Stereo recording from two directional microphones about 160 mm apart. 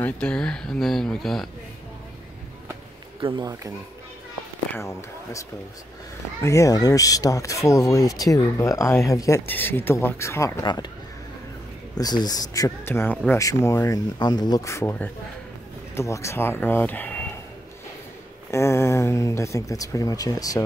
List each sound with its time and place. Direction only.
0.0 s speech: 5° left (ahead or behind)
3.2 s speech: 30° right (ahead or behind)
4.7 s speech: 20° left (ahead or behind)
6.4 s speech: 20° left (ahead or behind)
12.0 s speech: 25° left (ahead or behind)
18.5 s speech: 15° left (ahead or behind)